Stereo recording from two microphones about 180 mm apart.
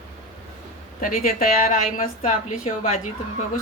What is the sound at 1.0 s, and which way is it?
A woman's voice, 50° left (ahead or behind).